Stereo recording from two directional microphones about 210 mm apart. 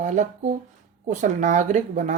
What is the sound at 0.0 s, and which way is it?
Speech, 35° right (ahead or behind).